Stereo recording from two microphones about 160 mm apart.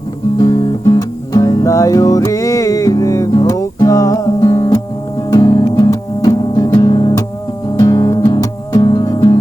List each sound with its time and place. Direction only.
0.3 s music: 20° left (ahead or behind)